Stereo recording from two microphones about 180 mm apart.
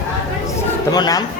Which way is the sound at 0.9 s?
20° left (ahead or behind).